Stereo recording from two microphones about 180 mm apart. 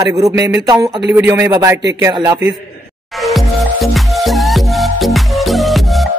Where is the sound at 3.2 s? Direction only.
Centre (ahead or behind).